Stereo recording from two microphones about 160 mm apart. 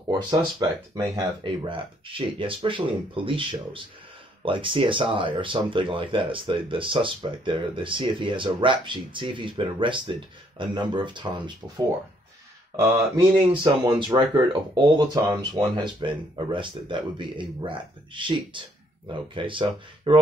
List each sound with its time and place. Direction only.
0.3 s speech: 25° right (ahead or behind)
12.7 s speech: 20° right (ahead or behind)
13.5 s speech: 30° right (ahead or behind)